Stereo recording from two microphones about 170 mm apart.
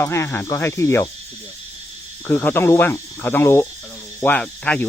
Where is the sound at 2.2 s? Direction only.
10° left (ahead or behind).